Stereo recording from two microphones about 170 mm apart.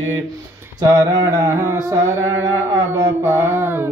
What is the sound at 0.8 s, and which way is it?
Mantra, 25° right (ahead or behind).